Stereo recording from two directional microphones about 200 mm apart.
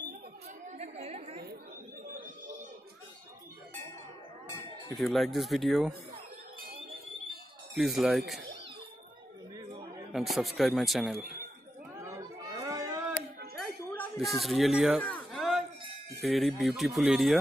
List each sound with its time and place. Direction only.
0.7 s chatter: 35° right (ahead or behind)
2.1 s a sound: 40° right (ahead or behind)
4.9 s speech: centre (ahead or behind)
7.7 s speech: centre (ahead or behind)
10.1 s speech: centre (ahead or behind)
12.0 s chatter: 15° right (ahead or behind)
13.6 s a sound: centre (ahead or behind)
16.3 s speech: centre (ahead or behind)